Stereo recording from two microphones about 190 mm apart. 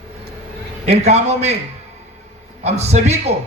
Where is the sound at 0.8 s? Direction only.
35° right (ahead or behind).